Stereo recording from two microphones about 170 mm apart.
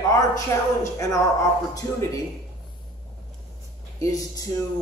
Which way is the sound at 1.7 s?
20° left (ahead or behind).